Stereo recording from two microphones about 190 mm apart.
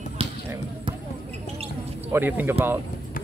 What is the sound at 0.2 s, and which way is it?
Basketball bounce, 30° right (ahead or behind).